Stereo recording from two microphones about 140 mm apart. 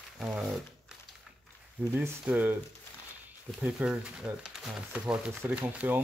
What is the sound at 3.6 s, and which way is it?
Speech, 5° right (ahead or behind).